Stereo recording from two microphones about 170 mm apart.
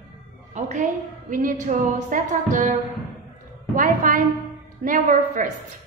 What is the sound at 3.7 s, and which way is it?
A woman's voice, 50° right (ahead or behind).